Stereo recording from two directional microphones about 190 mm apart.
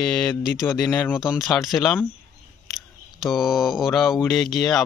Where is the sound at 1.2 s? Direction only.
Centre (ahead or behind).